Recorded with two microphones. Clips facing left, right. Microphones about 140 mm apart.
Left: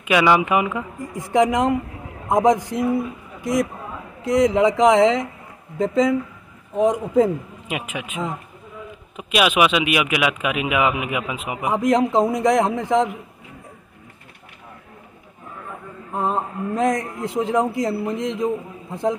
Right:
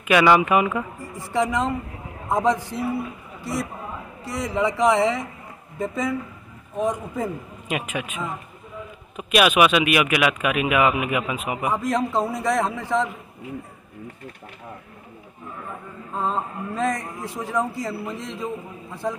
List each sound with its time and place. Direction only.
0.1 s speech: 15° left (ahead or behind)
4.5 s a man's voice: 20° left (ahead or behind)
16.1 s a man's voice: 15° left (ahead or behind)